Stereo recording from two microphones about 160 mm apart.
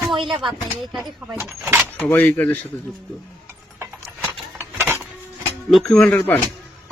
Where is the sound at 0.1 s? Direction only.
30° right (ahead or behind).